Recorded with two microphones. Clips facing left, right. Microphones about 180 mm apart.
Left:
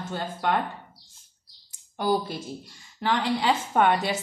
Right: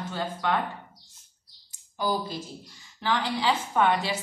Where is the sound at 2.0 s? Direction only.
60° left (ahead or behind).